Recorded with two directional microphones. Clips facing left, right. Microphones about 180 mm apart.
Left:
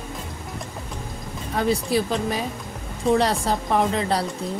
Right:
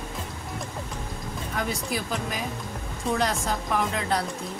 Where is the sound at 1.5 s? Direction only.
30° left (ahead or behind).